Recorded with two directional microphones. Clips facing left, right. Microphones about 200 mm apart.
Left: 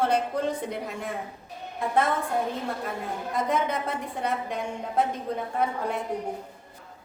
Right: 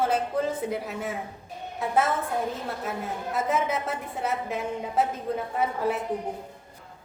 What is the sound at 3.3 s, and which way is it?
A woman's voice, 5° right (ahead or behind).